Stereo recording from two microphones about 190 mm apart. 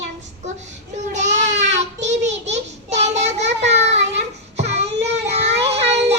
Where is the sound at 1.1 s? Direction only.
40° right (ahead or behind).